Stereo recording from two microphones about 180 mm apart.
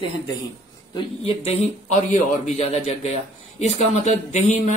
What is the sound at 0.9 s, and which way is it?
Speech, 35° left (ahead or behind).